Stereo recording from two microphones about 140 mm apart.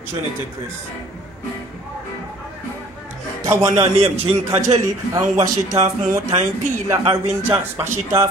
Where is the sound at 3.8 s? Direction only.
45° right (ahead or behind).